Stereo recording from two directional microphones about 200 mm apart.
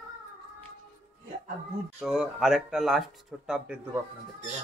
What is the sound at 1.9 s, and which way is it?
Speech, centre (ahead or behind).